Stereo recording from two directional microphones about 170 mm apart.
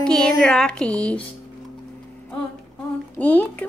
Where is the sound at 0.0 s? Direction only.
5° left (ahead or behind).